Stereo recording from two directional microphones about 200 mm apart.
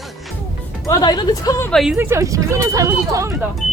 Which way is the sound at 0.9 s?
20° left (ahead or behind).